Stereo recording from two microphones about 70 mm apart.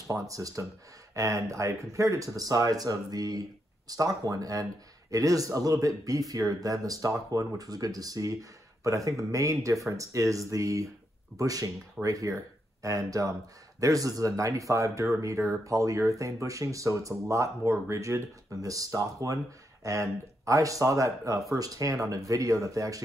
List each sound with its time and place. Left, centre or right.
0.1 s speech: right